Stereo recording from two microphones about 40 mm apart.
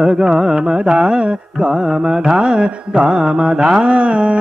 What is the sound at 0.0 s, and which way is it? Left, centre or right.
Carnatic music, centre.